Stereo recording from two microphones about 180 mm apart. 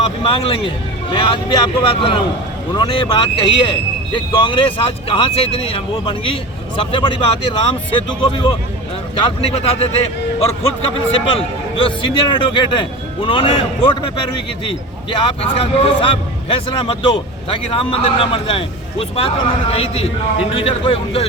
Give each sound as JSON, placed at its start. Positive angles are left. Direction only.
{"t": 0.2, "sound": "a man's voice", "side_deg": 30}
{"t": 11.1, "sound": "a man's voice", "side_deg": 30}